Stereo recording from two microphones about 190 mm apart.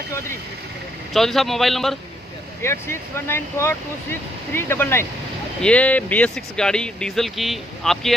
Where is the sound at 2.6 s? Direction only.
15° left (ahead or behind).